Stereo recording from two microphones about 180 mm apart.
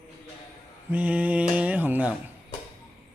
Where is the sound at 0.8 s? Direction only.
10° right (ahead or behind).